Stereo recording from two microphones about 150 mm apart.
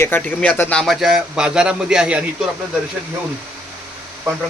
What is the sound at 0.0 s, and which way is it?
Speech, 15° left (ahead or behind).